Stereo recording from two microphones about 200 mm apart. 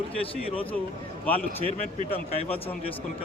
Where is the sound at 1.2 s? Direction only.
5° left (ahead or behind).